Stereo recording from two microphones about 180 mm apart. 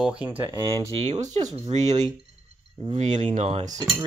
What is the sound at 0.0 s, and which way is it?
Speech, 5° right (ahead or behind).